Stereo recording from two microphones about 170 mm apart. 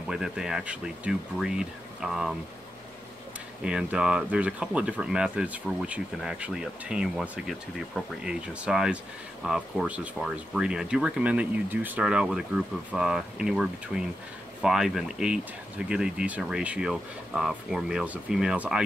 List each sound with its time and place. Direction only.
0.1 s speech: 5° right (ahead or behind)
3.6 s speech: 5° right (ahead or behind)